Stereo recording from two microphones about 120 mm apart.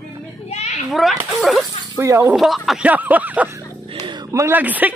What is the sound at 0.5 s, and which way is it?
Children playing, 65° left (ahead or behind).